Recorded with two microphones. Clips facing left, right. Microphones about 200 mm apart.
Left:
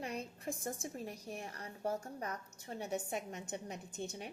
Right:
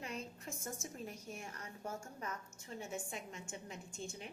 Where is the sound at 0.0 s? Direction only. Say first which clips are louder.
Left 4 dB; 35° left (ahead or behind).